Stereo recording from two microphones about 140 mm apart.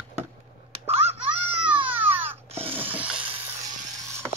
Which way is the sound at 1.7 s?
40° right (ahead or behind).